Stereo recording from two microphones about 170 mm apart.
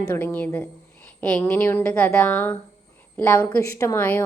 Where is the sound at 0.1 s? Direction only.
10° left (ahead or behind).